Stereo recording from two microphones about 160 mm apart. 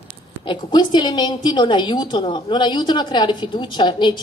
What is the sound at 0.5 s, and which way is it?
A woman's voice, 25° left (ahead or behind).